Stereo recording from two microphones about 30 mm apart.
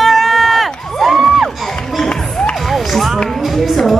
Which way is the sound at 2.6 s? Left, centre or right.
Centre.